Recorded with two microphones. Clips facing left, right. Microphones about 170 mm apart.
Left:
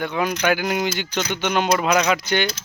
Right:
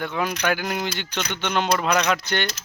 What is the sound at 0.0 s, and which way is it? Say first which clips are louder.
Speech: left 3 dB; centre (ahead or behind).